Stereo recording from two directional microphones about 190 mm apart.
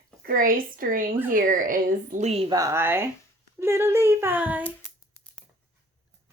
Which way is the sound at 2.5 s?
15° right (ahead or behind).